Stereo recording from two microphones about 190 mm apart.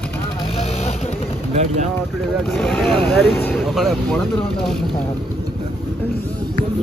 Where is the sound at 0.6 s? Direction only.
35° left (ahead or behind).